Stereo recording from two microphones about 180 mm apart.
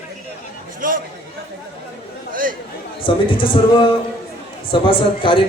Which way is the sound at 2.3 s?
50° right (ahead or behind).